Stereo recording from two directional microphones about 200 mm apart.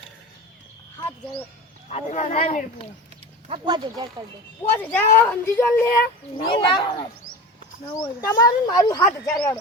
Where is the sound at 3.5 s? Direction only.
25° right (ahead or behind).